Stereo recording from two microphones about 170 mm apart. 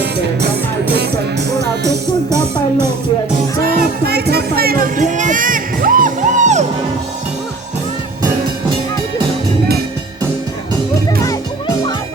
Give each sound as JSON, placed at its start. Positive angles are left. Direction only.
{"t": 3.8, "sound": "music", "side_deg": -70}